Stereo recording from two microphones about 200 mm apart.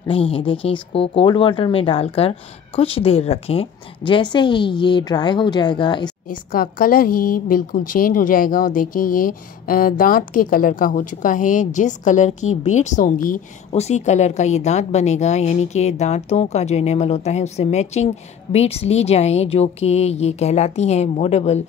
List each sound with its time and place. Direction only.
0.1 s speech: 30° left (ahead or behind)
6.2 s a woman's voice: 45° left (ahead or behind)